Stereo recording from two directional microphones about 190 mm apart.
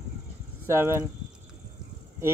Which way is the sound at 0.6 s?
15° right (ahead or behind).